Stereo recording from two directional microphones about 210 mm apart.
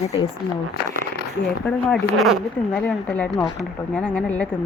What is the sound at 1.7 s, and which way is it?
Speech, 5° left (ahead or behind).